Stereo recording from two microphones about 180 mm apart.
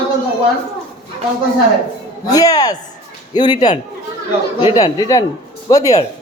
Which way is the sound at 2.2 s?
20° left (ahead or behind).